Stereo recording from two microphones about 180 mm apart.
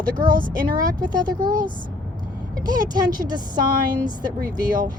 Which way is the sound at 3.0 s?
25° right (ahead or behind).